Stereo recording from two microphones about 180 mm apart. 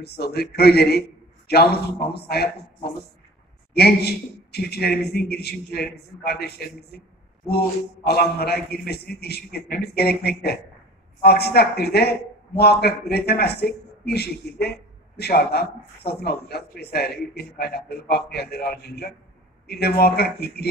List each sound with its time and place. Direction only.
0.0 s a man's voice: 65° left (ahead or behind)
3.7 s a man's voice: 65° left (ahead or behind)